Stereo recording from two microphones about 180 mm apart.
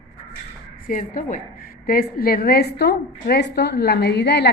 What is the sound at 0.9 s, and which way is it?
A woman's voice, 45° left (ahead or behind).